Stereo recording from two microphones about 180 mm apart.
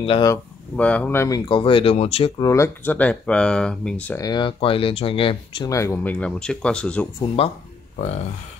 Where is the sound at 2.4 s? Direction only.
15° left (ahead or behind).